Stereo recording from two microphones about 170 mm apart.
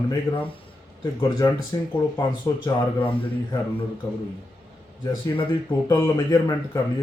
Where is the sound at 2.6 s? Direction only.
30° left (ahead or behind).